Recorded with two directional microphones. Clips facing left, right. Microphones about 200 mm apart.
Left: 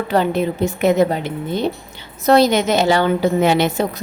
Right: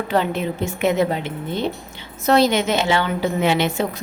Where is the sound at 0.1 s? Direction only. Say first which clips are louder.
Left 4 dB; 40° left (ahead or behind).